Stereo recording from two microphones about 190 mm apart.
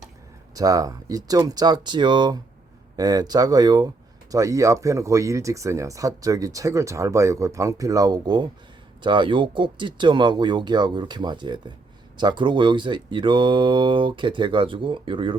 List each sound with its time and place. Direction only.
0.5 s speech: 20° right (ahead or behind)